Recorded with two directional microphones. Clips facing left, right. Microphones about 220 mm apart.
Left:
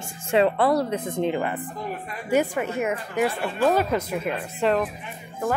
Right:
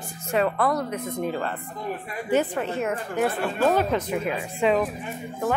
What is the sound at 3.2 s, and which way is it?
Speech, centre (ahead or behind).